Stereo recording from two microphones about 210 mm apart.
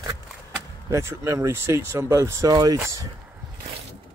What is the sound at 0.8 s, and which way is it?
Speech, 15° right (ahead or behind).